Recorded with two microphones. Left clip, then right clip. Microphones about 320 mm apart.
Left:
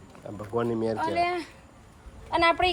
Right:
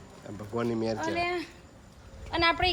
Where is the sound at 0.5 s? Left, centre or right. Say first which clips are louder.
Left 3 dB; centre.